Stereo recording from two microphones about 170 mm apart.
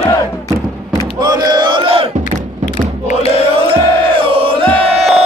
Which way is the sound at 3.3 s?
30° right (ahead or behind).